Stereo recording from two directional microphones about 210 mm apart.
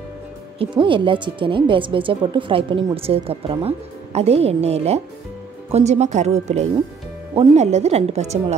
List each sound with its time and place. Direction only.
0.6 s a woman's voice: 25° right (ahead or behind)